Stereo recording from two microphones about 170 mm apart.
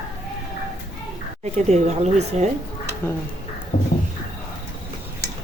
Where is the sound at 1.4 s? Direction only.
40° right (ahead or behind).